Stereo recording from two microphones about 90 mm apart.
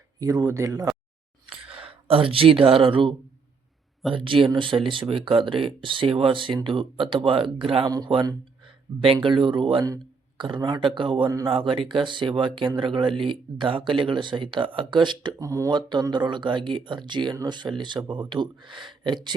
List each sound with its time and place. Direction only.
0.2 s speech: 40° right (ahead or behind)
1.7 s speech: 90° right
7.9 s speech: 45° right (ahead or behind)
8.6 s a sound: 70° right (ahead or behind)
9.2 s speech: 65° right (ahead or behind)
15.4 s speech: 35° right (ahead or behind)
15.7 s speech: 55° right (ahead or behind)